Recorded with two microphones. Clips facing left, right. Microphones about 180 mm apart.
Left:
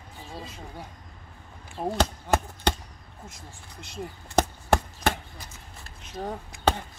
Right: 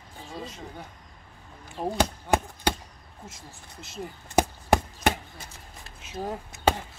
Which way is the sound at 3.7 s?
Centre (ahead or behind).